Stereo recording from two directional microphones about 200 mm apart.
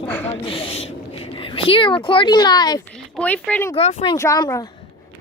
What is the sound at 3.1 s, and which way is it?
Speech, 5° left (ahead or behind).